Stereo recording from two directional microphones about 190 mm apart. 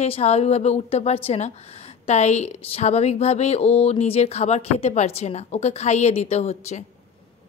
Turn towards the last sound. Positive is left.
turn(degrees=35)  # may be behind; listen again after turning